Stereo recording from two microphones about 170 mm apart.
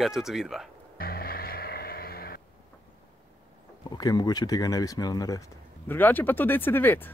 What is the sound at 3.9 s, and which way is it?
Speech, 25° left (ahead or behind).